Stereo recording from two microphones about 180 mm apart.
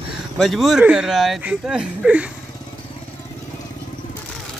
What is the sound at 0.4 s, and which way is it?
Speech, centre (ahead or behind).